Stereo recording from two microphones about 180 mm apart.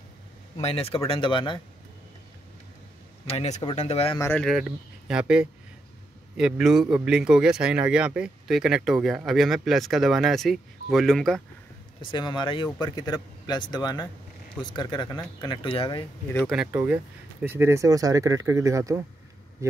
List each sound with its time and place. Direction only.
0.6 s speech: 35° left (ahead or behind)
3.3 s speech: 35° left (ahead or behind)
4.2 s speech: 10° left (ahead or behind)
4.5 s speech: centre (ahead or behind)
12.0 s speech: 25° left (ahead or behind)
16.3 s speech: centre (ahead or behind); by 19.7 s 15° right (ahead or behind)